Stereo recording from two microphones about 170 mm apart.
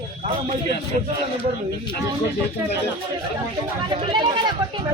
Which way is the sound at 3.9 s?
30° right (ahead or behind).